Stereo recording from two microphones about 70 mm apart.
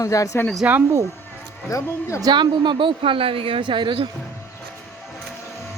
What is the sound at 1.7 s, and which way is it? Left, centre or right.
Speech, left.